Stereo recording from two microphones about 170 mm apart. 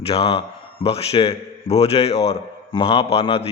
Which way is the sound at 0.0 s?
35° left (ahead or behind).